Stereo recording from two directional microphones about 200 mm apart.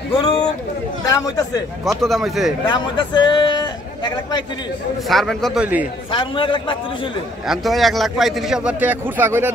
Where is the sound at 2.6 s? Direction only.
20° left (ahead or behind).